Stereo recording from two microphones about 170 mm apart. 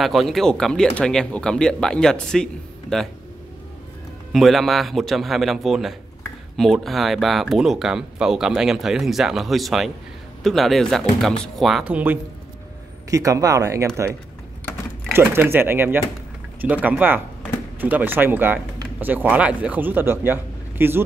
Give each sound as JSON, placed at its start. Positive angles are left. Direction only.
{"t": 0.0, "sound": "speech", "side_deg": 0}
{"t": 4.3, "sound": "speech", "side_deg": 0}
{"t": 15.1, "sound": "speech", "side_deg": -15}